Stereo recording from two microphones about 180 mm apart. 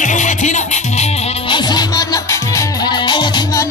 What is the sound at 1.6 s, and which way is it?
Music, 25° left (ahead or behind).